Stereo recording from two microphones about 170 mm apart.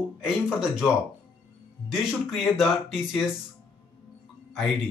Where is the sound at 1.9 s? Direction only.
Centre (ahead or behind).